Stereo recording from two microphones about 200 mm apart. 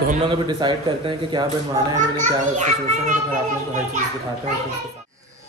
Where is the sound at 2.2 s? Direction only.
40° right (ahead or behind).